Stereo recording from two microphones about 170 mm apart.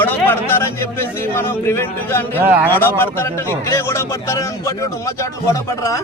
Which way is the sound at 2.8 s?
15° left (ahead or behind).